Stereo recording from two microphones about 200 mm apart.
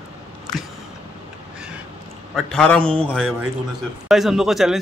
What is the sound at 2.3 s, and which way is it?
Speech, 5° left (ahead or behind).